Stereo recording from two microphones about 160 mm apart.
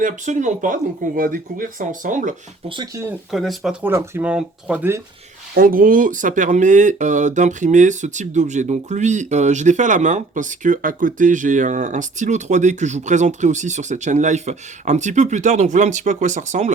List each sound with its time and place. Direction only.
0.0 s speech: 50° right (ahead or behind)
2.6 s speech: 25° right (ahead or behind)
3.3 s speech: centre (ahead or behind)
5.5 s speech: 60° right (ahead or behind)